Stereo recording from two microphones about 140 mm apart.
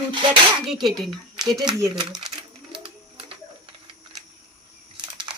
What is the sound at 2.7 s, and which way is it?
Bird, 40° right (ahead or behind).